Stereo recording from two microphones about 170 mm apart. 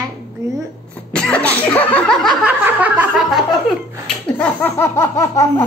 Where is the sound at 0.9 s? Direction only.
5° left (ahead or behind).